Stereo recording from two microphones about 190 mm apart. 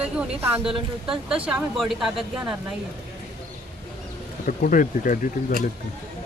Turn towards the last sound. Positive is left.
turn(degrees=45)  # may be behind; listen again after turning